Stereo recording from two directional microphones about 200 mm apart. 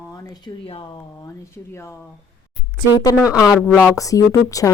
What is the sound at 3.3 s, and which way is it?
Speech, 15° left (ahead or behind).